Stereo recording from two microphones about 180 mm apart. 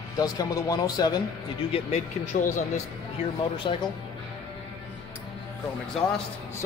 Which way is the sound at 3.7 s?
30° left (ahead or behind).